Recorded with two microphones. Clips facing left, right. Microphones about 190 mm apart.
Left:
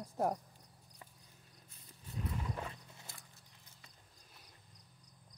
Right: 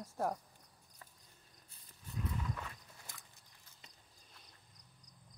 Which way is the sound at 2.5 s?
30° left (ahead or behind).